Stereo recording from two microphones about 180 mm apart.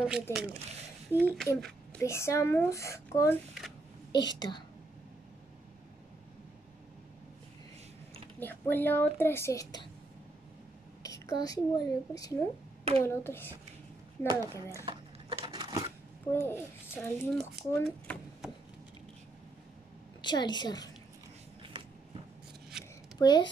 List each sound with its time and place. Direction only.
0.0 s speech: 5° right (ahead or behind)
1.6 s speech: 10° left (ahead or behind)
4.4 s a woman's voice: 25° left (ahead or behind)
8.4 s speech: 10° left (ahead or behind)
11.0 s speech: 20° left (ahead or behind)
14.9 s a sound: 30° right (ahead or behind)
16.3 s a child's voice: 10° left (ahead or behind)
20.2 s a woman's voice: 25° left (ahead or behind)
22.7 s a sound: 5° right (ahead or behind)
23.1 s a woman's voice: 25° left (ahead or behind)